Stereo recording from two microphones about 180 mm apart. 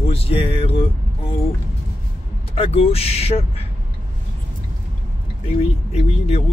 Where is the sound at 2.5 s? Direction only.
35° left (ahead or behind).